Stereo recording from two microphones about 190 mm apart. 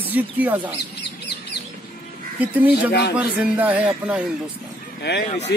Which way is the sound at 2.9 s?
55° left (ahead or behind).